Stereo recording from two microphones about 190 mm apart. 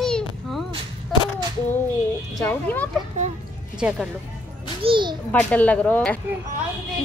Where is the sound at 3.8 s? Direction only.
5° right (ahead or behind).